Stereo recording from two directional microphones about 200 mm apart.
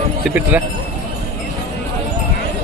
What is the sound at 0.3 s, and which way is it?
Speech, 10° right (ahead or behind).